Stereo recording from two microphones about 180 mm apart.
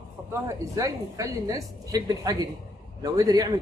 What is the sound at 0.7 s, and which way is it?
Speech, 20° right (ahead or behind).